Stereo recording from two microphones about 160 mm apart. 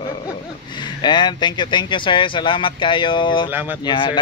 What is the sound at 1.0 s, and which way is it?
Speech, 30° left (ahead or behind).